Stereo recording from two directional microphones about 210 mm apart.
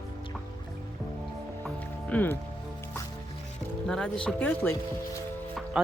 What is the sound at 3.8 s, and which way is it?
Speech, 5° left (ahead or behind).